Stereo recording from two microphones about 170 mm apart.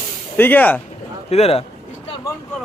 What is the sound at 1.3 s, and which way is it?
Speech, 35° left (ahead or behind).